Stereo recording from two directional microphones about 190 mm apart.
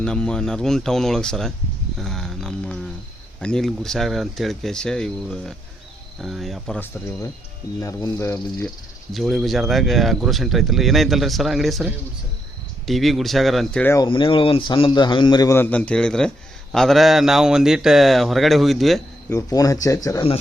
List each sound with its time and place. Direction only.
0.0 s speech: 5° left (ahead or behind)
2.0 s a sound: centre (ahead or behind)
3.4 s speech: 5° left (ahead or behind)
9.1 s speech: centre (ahead or behind)
13.9 s a man's voice: 25° left (ahead or behind); by 19.0 s centre (ahead or behind)
19.3 s speech: 15° left (ahead or behind)